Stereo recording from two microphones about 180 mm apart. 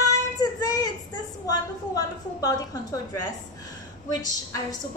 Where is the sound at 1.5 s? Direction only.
20° left (ahead or behind).